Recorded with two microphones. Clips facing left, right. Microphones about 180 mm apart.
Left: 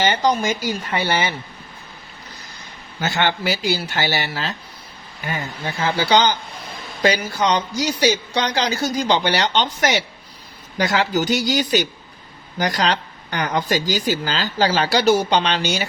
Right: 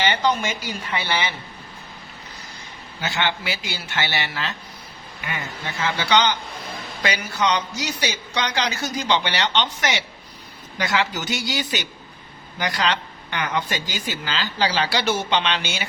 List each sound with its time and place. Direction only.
0.0 s speech: 40° left (ahead or behind)
3.0 s a woman's voice: 45° left (ahead or behind)